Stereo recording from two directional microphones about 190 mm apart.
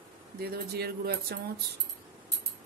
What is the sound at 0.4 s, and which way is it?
Speech, 55° right (ahead or behind).